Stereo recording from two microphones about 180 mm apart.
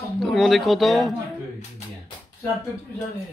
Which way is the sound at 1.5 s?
35° left (ahead or behind).